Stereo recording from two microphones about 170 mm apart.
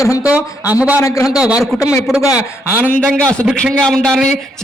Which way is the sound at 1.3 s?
5° right (ahead or behind).